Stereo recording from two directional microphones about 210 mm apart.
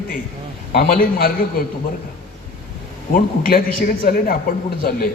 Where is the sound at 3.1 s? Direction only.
45° left (ahead or behind).